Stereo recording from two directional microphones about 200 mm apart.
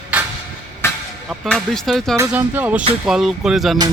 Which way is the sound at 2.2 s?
10° right (ahead or behind).